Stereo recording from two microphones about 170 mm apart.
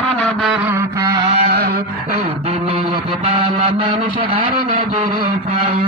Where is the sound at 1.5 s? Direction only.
65° right (ahead or behind).